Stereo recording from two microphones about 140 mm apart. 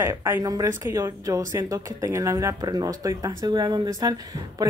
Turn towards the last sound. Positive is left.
turn(degrees=-25)  # may be behind; listen again after turning